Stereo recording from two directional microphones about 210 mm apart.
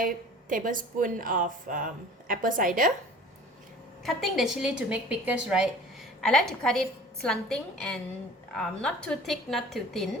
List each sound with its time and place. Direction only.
0.0 s speech: 40° right (ahead or behind)
4.0 s a woman's voice: centre (ahead or behind)